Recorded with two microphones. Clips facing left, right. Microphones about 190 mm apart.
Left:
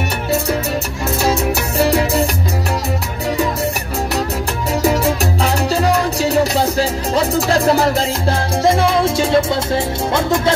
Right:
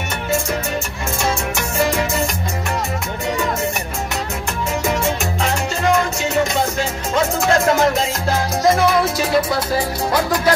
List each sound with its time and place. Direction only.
1.8 s music: 35° left (ahead or behind)
4.8 s music: 35° left (ahead or behind)